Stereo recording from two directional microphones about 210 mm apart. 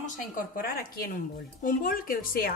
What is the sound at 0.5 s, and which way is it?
A woman's voice, 45° left (ahead or behind).